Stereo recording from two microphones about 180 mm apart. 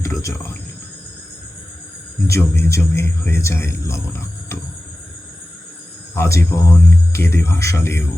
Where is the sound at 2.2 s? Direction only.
15° left (ahead or behind).